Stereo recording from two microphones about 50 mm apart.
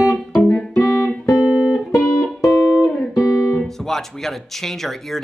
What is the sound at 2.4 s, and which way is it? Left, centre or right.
Music, left.